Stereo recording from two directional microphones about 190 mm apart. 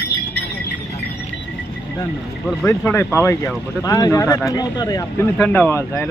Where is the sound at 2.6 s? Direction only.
10° left (ahead or behind).